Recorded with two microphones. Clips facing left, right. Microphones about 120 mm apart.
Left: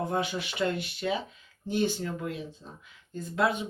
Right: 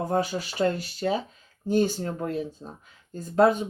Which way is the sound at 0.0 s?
40° right (ahead or behind).